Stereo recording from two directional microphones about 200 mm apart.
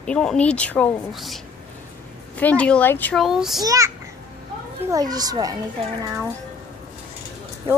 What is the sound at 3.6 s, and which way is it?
A woman's voice, 15° right (ahead or behind).